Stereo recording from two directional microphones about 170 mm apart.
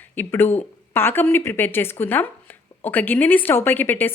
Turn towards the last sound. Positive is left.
turn(degrees=10)  # may be behind; listen again after turning